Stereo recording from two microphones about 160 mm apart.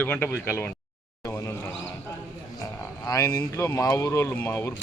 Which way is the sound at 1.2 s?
15° left (ahead or behind).